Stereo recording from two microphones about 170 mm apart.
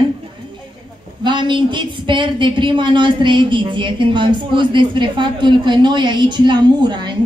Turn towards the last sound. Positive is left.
turn(degrees=-25)  # may be behind; listen again after turning